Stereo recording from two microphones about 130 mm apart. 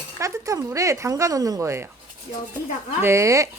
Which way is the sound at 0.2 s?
25° right (ahead or behind).